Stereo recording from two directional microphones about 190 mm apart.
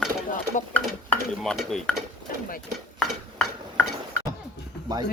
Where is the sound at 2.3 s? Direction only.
45° left (ahead or behind).